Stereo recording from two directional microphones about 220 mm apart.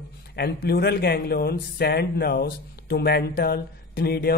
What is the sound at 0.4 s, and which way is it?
Speech, 45° left (ahead or behind).